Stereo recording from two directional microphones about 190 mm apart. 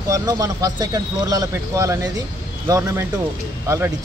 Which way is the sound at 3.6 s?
15° right (ahead or behind).